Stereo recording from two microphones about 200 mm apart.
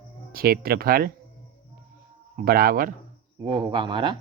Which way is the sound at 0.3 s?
50° right (ahead or behind).